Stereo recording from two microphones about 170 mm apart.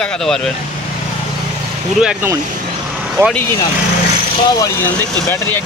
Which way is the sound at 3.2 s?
20° right (ahead or behind).